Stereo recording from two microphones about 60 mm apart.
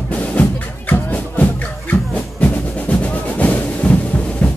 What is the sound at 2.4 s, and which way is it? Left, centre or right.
Percussion, left.